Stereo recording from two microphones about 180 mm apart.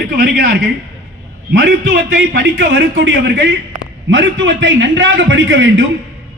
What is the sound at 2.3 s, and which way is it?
A man's voice, 80° right.